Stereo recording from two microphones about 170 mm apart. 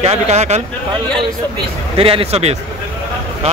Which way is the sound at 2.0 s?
35° right (ahead or behind).